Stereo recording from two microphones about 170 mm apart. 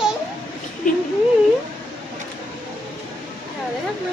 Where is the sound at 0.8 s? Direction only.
45° left (ahead or behind).